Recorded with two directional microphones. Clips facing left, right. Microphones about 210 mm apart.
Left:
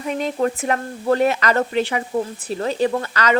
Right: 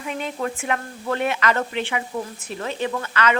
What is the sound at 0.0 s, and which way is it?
Speech, 40° left (ahead or behind).